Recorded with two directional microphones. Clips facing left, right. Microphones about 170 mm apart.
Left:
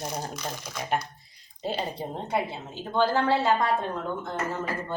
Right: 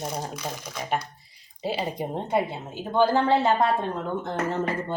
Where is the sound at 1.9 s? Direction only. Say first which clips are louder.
Right 4 dB; 15° right (ahead or behind).